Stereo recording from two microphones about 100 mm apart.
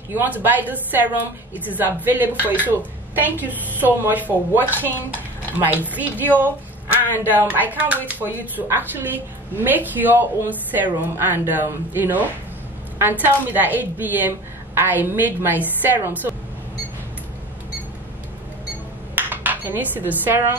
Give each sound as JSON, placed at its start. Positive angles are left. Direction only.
{"t": 0.1, "sound": "a woman's voice", "side_deg": -20}
{"t": 19.1, "sound": "dishes", "side_deg": -20}